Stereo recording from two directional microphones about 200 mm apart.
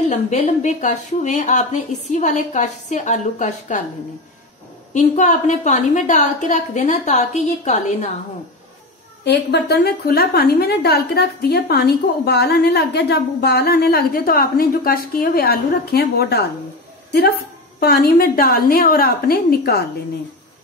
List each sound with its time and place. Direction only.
0.1 s a woman's voice: 35° left (ahead or behind)
4.9 s a woman's voice: 40° left (ahead or behind)
9.2 s a woman's voice: 55° left (ahead or behind)
17.7 s a woman's voice: 50° left (ahead or behind)